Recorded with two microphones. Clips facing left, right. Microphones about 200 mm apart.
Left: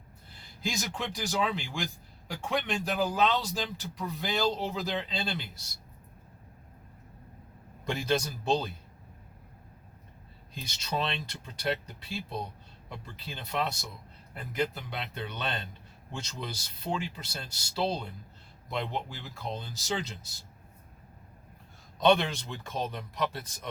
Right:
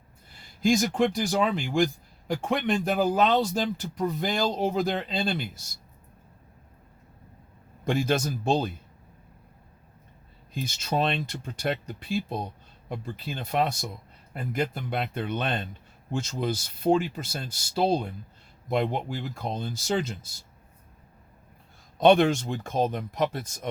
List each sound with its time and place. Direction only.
0.6 s speech: 50° right (ahead or behind)
7.9 s speech: 50° right (ahead or behind)
10.5 s speech: 50° right (ahead or behind)
21.9 s speech: 50° right (ahead or behind)